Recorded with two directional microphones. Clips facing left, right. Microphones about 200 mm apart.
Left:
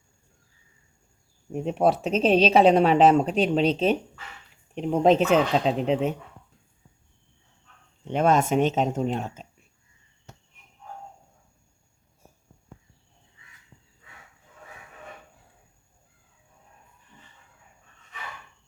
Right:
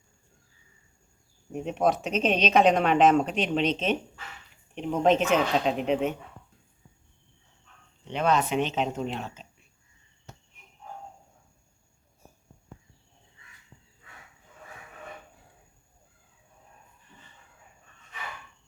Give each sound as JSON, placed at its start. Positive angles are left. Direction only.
{"t": 1.6, "sound": "speech", "side_deg": 30}
{"t": 8.0, "sound": "speech", "side_deg": 45}